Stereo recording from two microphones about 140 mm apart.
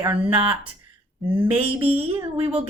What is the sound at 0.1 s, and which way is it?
Speech, 15° right (ahead or behind).